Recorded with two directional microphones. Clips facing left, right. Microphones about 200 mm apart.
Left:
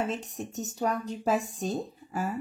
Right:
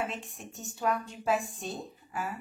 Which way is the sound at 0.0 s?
40° left (ahead or behind).